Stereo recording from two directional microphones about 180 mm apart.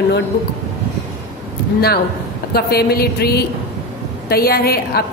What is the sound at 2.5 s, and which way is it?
A woman's voice, 60° left (ahead or behind).